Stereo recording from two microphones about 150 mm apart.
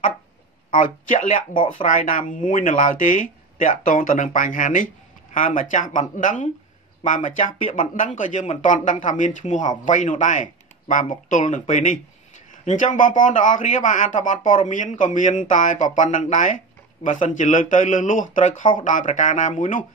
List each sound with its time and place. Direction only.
0.7 s speech: 60° left (ahead or behind)